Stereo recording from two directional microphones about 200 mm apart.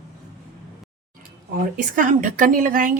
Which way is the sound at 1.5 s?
45° right (ahead or behind).